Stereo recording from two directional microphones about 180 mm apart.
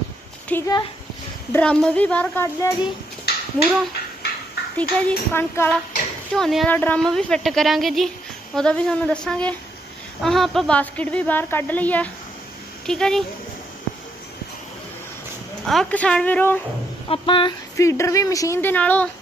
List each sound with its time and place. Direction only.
0.5 s a woman's voice: 15° left (ahead or behind)
3.3 s a sound: 60° left (ahead or behind)
4.7 s a woman's voice: 10° left (ahead or behind)
15.6 s a woman's voice: centre (ahead or behind)
17.1 s speech: 30° left (ahead or behind)
17.7 s a woman's voice: 15° left (ahead or behind)